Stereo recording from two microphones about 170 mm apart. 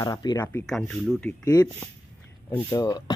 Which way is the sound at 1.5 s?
20° left (ahead or behind).